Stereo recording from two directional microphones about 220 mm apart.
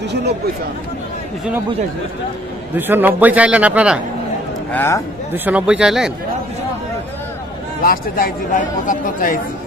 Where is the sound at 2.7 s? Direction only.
10° right (ahead or behind).